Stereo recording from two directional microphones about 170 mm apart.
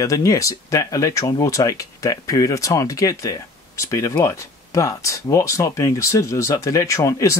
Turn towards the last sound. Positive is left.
turn(degrees=20)  # may be behind; listen again after turning